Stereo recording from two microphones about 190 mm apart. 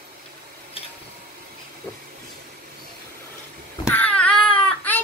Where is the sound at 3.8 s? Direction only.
10° left (ahead or behind).